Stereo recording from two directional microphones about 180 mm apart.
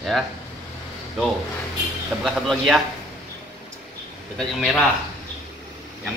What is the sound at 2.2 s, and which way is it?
Speech, 5° right (ahead or behind).